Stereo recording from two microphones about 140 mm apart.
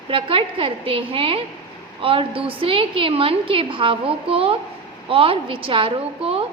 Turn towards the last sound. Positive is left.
turn(degrees=-40)  # may be behind; listen again after turning